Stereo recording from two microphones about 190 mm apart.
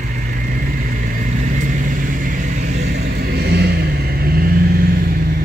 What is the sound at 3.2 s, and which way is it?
Vehicle, 55° right (ahead or behind).